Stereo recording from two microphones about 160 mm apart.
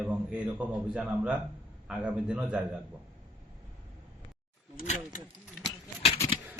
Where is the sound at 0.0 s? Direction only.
5° right (ahead or behind).